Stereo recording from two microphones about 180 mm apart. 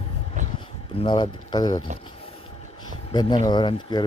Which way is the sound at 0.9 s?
25° left (ahead or behind).